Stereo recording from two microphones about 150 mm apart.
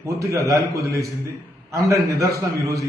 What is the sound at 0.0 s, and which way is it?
A man's voice, 20° right (ahead or behind).